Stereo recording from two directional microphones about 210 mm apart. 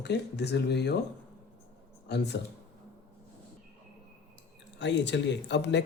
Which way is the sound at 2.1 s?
55° left (ahead or behind).